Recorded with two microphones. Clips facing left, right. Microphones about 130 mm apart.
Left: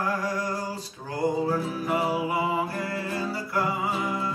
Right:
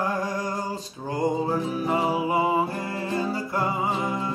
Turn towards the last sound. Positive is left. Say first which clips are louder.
# right 2 dB
turn(degrees=-20)  # may be behind; listen again after turning